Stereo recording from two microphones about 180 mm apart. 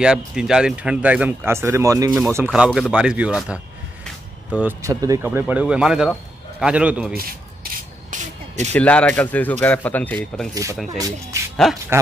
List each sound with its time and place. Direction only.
0.0 s speech: 5° right (ahead or behind)
8.1 s vehicle: 45° right (ahead or behind)
8.7 s speech: 5° left (ahead or behind)
10.5 s speech: 15° right (ahead or behind)
11.5 s speech: centre (ahead or behind)